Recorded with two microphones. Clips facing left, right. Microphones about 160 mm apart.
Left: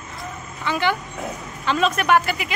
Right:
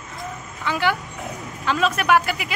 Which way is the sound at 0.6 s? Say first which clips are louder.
Even; 5° right (ahead or behind).